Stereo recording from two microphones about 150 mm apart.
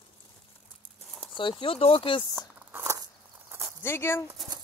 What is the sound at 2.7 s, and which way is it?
Walk, 15° right (ahead or behind).